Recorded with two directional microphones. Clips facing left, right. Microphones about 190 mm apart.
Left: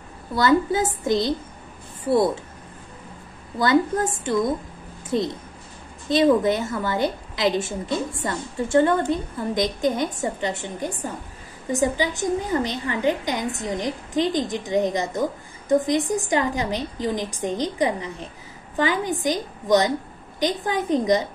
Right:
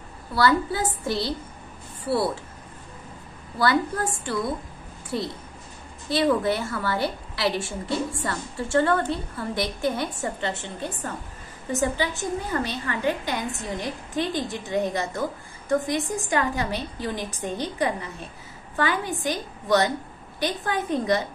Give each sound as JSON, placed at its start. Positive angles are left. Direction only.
{"t": 0.3, "sound": "a woman's voice", "side_deg": 20}
{"t": 3.5, "sound": "a woman's voice", "side_deg": 20}